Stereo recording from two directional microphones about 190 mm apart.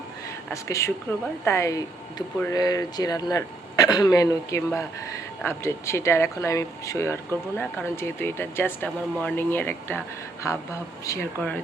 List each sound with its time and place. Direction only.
0.5 s speech: 15° left (ahead or behind)